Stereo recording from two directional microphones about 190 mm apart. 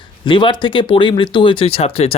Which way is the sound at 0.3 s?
25° left (ahead or behind).